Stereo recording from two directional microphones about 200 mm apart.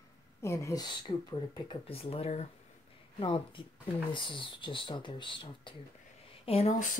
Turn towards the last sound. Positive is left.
turn(degrees=40)  # may be behind; listen again after turning